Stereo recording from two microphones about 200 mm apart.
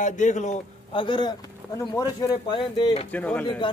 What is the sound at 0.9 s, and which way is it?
Speech, 25° left (ahead or behind).